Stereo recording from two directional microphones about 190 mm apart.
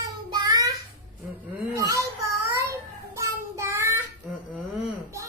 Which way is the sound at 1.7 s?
15° right (ahead or behind).